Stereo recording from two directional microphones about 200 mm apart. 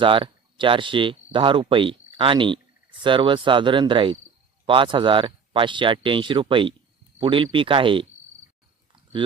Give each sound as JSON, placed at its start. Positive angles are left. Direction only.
{"t": 0.0, "sound": "speech", "side_deg": -25}